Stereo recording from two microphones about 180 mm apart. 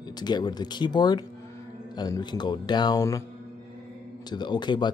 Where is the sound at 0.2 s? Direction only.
25° left (ahead or behind).